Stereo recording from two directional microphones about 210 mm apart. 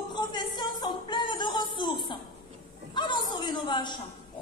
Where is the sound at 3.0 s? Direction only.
20° left (ahead or behind).